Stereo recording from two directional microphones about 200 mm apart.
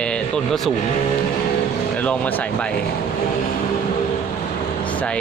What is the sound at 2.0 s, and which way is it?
Speech, 10° left (ahead or behind).